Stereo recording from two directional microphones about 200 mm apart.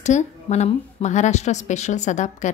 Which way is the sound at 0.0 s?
35° left (ahead or behind).